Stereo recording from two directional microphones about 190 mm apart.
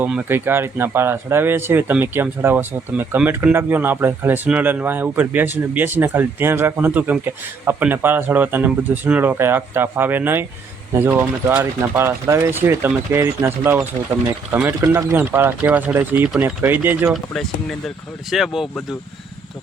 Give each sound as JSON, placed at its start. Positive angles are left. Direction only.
{"t": 0.0, "sound": "speech", "side_deg": -10}
{"t": 17.3, "sound": "speech", "side_deg": 0}